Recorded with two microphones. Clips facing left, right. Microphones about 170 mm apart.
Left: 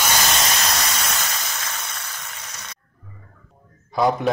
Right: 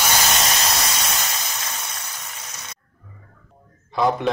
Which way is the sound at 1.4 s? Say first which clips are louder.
Even; 15° right (ahead or behind).